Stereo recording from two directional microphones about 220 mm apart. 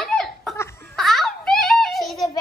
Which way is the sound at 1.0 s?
Centre (ahead or behind).